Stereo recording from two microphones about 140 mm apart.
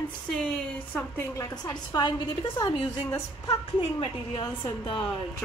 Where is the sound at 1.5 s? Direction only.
30° left (ahead or behind).